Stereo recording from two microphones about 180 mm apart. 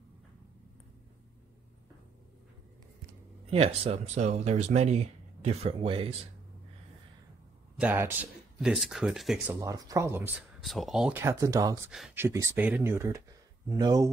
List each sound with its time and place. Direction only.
3.4 s speech: 35° right (ahead or behind)
7.8 s speech: 10° right (ahead or behind)
9.5 s speech: 15° right (ahead or behind)
10.6 s speech: centre (ahead or behind); by 14.1 s 20° right (ahead or behind)